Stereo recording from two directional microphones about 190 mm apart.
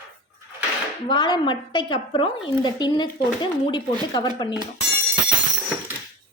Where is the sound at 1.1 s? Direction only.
25° left (ahead or behind).